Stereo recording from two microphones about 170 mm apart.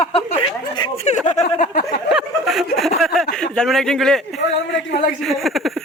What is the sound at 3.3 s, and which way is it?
A man's voice, 5° left (ahead or behind).